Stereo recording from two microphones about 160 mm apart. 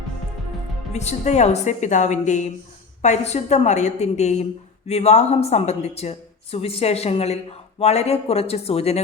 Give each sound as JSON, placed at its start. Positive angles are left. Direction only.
{"t": 0.9, "sound": "a woman's voice", "side_deg": 45}